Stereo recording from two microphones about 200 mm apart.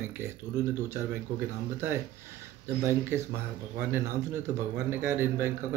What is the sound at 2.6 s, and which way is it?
A man's voice, 15° right (ahead or behind).